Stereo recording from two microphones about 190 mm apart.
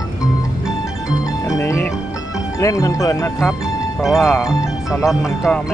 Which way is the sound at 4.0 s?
Centre (ahead or behind).